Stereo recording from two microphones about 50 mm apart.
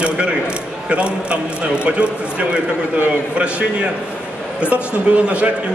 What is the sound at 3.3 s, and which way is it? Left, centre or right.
A man's voice, right.